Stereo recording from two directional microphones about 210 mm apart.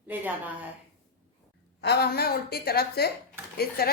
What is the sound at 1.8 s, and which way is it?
A woman's voice, 50° left (ahead or behind).